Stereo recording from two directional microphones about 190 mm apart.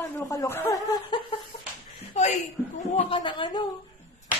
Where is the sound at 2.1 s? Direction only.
35° left (ahead or behind).